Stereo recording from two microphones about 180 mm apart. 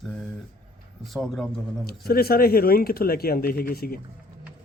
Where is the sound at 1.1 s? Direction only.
Centre (ahead or behind).